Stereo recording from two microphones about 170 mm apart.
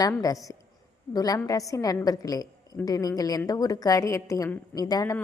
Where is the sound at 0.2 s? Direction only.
20° left (ahead or behind).